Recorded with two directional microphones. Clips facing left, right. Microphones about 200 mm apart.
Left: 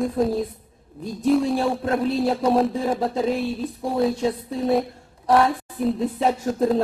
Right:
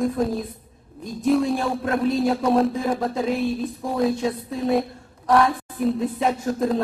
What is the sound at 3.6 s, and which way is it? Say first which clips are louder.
Speech: left 1 dB; 5° left (ahead or behind).